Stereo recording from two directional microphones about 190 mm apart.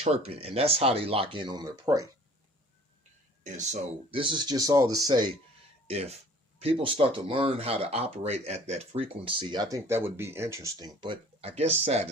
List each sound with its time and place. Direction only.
0.0 s speech: 35° right (ahead or behind)
3.4 s speech: 40° right (ahead or behind); by 5.4 s 20° right (ahead or behind)
5.9 s speech: 35° right (ahead or behind)